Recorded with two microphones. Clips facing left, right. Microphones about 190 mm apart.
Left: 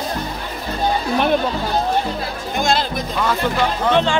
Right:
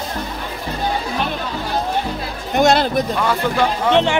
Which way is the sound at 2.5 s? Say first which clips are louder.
Right 6 dB; 65° right (ahead or behind).